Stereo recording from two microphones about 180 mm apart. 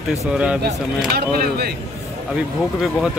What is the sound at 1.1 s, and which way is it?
Speech, 60° right (ahead or behind).